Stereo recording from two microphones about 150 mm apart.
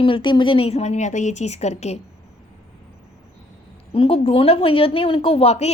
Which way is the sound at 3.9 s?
40° left (ahead or behind).